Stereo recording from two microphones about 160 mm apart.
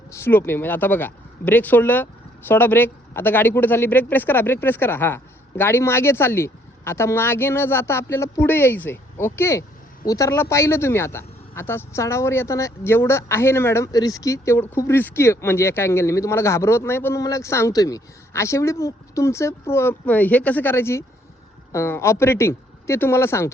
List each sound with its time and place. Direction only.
0.1 s speech: 15° left (ahead or behind)